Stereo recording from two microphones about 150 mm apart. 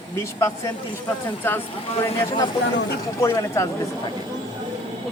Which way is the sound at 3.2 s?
20° left (ahead or behind).